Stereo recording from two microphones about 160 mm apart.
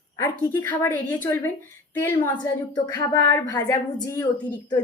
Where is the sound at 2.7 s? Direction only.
25° left (ahead or behind).